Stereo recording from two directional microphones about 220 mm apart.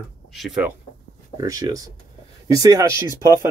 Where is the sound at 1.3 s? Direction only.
15° right (ahead or behind).